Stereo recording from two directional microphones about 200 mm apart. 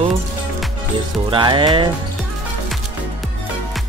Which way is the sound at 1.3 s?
25° right (ahead or behind).